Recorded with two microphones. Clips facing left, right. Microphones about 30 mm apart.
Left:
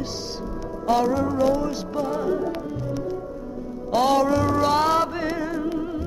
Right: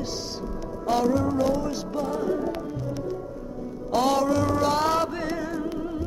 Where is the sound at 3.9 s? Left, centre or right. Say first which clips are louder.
Left 3 dB; centre.